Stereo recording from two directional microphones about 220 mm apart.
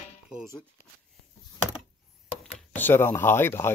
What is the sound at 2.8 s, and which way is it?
Speech, 10° left (ahead or behind).